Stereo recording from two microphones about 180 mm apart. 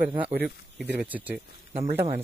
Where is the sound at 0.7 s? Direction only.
10° right (ahead or behind).